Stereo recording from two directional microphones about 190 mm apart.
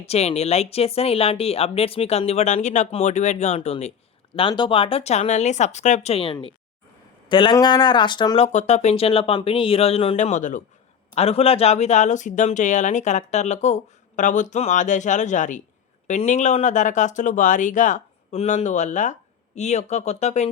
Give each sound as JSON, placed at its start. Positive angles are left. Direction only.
{"t": 0.0, "sound": "speech", "side_deg": 35}
{"t": 8.5, "sound": "speech", "side_deg": 35}